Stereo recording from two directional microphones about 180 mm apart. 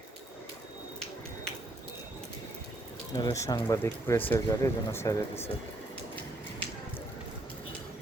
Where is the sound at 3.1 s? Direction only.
20° left (ahead or behind).